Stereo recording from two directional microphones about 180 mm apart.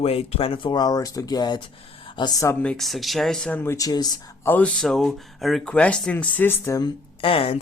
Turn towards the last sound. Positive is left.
turn(degrees=30)  # may be behind; listen again after turning